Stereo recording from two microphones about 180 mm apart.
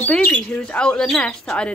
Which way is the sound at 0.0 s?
5° left (ahead or behind).